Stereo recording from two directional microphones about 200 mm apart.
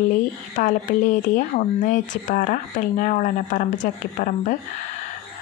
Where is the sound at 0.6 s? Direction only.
40° left (ahead or behind).